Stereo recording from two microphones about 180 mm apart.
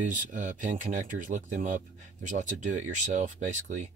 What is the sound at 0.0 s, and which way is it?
Speech, 45° right (ahead or behind).